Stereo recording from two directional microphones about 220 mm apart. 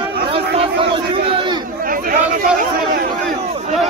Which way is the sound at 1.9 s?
40° right (ahead or behind).